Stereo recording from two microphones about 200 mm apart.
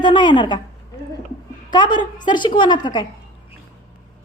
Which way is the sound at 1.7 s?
20° left (ahead or behind).